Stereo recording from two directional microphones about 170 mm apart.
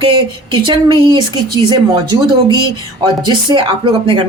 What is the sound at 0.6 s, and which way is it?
A woman's voice, 25° right (ahead or behind).